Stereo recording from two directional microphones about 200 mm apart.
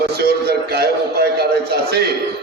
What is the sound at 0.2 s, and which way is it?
A man's voice, 50° right (ahead or behind).